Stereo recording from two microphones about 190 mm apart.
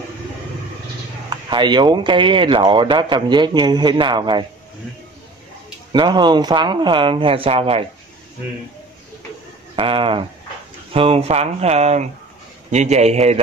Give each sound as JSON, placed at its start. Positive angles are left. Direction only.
{"t": 1.3, "sound": "speech", "side_deg": -25}
{"t": 5.9, "sound": "speech", "side_deg": -25}
{"t": 9.8, "sound": "speech", "side_deg": -30}